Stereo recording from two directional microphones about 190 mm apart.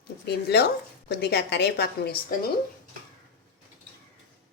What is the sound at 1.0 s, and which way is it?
Speech, 60° left (ahead or behind).